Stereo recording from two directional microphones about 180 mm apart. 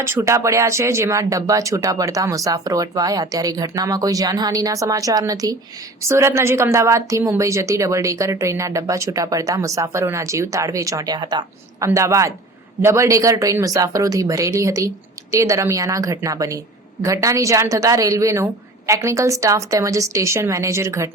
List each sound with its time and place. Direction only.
0.0 s a woman's voice: 15° right (ahead or behind)